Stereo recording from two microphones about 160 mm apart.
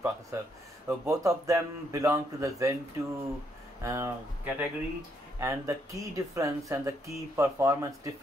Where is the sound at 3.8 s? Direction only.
15° right (ahead or behind).